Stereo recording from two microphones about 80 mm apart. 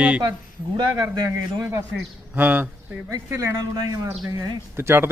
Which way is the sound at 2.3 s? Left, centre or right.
Right.